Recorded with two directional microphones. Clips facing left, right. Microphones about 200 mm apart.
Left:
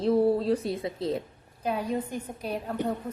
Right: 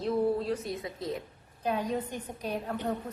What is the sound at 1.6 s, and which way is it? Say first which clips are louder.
A woman's voice: left 2 dB; 10° left (ahead or behind).